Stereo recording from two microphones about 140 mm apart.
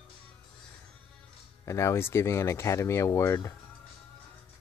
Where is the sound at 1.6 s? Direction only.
20° left (ahead or behind).